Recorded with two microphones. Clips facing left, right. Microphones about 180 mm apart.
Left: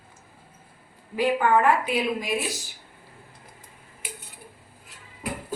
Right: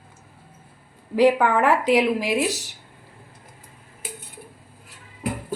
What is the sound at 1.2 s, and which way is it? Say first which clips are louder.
Speech: right 4 dB; 75° right (ahead or behind).